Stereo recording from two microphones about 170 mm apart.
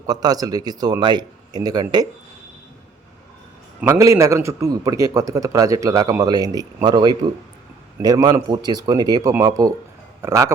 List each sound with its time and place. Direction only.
0.1 s a man's voice: 20° right (ahead or behind)
3.8 s a man's voice: 20° right (ahead or behind)